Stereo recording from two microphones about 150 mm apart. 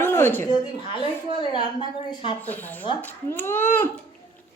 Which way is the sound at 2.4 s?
10° left (ahead or behind).